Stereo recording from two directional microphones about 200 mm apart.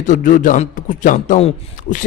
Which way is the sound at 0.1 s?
40° left (ahead or behind).